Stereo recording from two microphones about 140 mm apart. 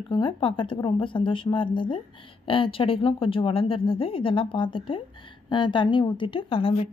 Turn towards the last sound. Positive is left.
turn(degrees=40)  # may be behind; listen again after turning